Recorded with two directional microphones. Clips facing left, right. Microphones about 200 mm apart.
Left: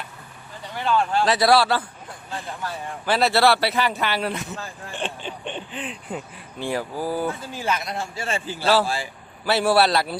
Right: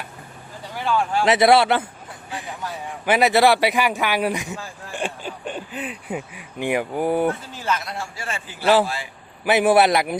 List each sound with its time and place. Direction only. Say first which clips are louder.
0.8 s a man's voice: even; 10° right (ahead or behind)
1.3 s a man's voice: right 4 dB; 25° right (ahead or behind)
7.5 s a man's voice: even; 15° left (ahead or behind); by 8.6 s 30° left (ahead or behind)
9.4 s a man's voice: right 3 dB; 15° right (ahead or behind)